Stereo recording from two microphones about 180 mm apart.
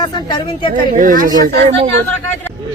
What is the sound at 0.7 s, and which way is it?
Speech, 50° right (ahead or behind).